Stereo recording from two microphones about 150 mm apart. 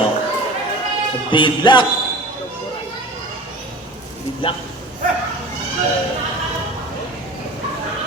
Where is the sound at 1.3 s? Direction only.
30° left (ahead or behind).